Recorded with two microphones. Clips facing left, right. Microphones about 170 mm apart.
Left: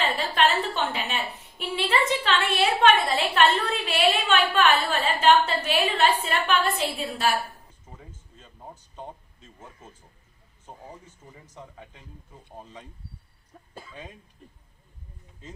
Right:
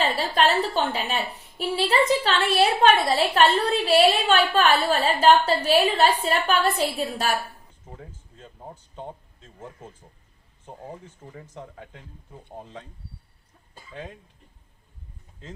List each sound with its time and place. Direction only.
0.2 s a woman's voice: 35° right (ahead or behind)
11.3 s speech: 60° right (ahead or behind)